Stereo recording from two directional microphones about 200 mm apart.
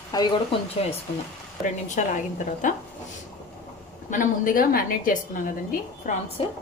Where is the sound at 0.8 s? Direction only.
30° left (ahead or behind).